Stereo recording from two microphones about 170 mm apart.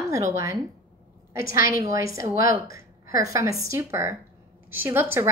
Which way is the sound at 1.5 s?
15° right (ahead or behind).